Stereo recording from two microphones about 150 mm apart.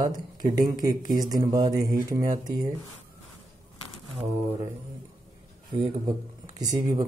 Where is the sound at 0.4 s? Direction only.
25° right (ahead or behind).